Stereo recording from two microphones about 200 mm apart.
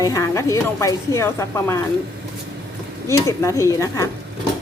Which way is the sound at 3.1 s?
15° left (ahead or behind).